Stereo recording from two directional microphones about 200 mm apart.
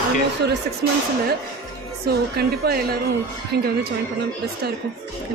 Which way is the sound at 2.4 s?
50° right (ahead or behind).